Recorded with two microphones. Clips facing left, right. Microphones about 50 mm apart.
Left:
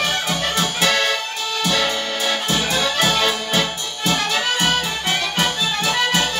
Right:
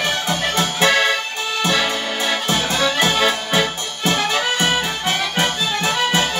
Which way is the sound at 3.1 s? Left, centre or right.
Centre.